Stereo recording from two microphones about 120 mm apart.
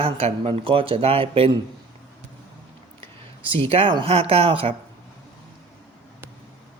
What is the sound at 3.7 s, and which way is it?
Speech, 45° right (ahead or behind).